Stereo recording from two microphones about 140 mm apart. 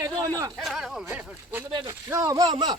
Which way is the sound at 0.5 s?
5° right (ahead or behind).